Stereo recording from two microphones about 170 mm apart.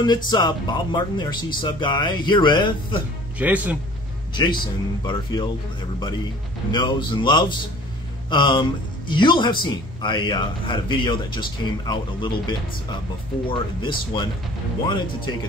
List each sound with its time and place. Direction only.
0.0 s speech: 25° left (ahead or behind)
3.3 s speech: 10° right (ahead or behind)
4.3 s speech: 25° left (ahead or behind)
6.7 s speech: 25° left (ahead or behind)